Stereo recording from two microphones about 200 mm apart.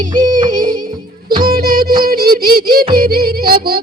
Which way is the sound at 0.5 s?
45° right (ahead or behind).